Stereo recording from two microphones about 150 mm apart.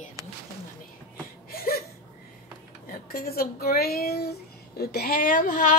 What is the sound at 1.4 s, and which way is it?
Whimper, 85° left.